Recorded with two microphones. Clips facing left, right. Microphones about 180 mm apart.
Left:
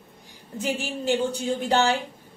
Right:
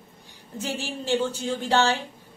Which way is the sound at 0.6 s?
15° left (ahead or behind).